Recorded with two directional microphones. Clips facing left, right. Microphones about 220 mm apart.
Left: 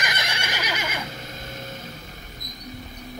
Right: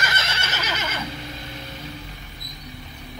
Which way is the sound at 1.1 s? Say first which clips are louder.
Right 2 dB; 45° left (ahead or behind).